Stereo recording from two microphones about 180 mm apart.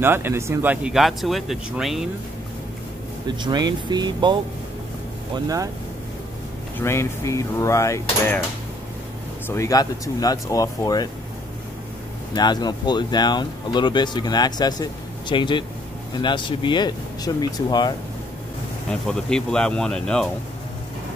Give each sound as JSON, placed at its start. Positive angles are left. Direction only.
{"t": 0.0, "sound": "speech", "side_deg": -10}
{"t": 3.3, "sound": "speech", "side_deg": -25}
{"t": 6.8, "sound": "speech", "side_deg": 15}
{"t": 9.5, "sound": "speech", "side_deg": 20}
{"t": 12.4, "sound": "speech", "side_deg": 25}
{"t": 18.9, "sound": "speech", "side_deg": 5}